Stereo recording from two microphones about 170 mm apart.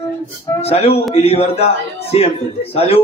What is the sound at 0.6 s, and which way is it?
A man's voice, 35° left (ahead or behind).